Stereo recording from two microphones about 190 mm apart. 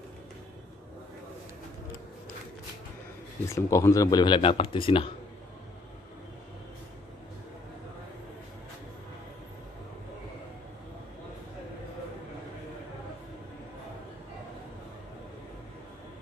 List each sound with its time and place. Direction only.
3.4 s speech: 15° left (ahead or behind)